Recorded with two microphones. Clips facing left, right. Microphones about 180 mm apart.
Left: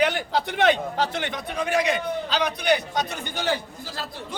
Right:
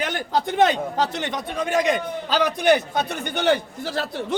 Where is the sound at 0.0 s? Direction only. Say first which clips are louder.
Left 1 dB; 45° right (ahead or behind).